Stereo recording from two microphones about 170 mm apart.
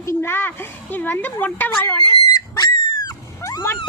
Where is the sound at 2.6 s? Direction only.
25° left (ahead or behind).